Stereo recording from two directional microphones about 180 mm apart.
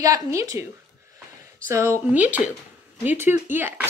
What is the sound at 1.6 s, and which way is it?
Speech, 15° right (ahead or behind).